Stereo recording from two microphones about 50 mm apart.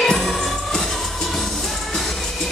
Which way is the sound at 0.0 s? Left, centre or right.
Centre.